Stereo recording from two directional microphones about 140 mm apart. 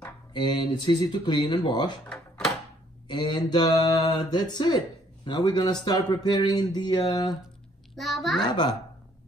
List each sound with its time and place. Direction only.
0.3 s speech: 35° left (ahead or behind)
2.0 s drawer open or close: 5° left (ahead or behind)
3.1 s speech: 30° left (ahead or behind)
7.9 s a child's voice: centre (ahead or behind)
8.5 s speech: 35° left (ahead or behind)